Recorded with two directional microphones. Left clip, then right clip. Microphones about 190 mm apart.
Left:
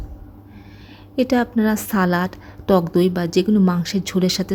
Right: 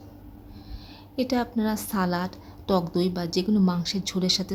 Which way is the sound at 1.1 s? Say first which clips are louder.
Left 8 dB; 15° left (ahead or behind).